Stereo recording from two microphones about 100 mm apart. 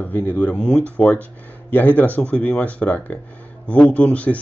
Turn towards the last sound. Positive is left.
turn(degrees=15)  # may be behind; listen again after turning